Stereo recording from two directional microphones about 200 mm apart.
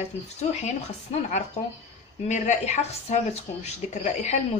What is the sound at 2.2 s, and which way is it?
Speech, 35° left (ahead or behind).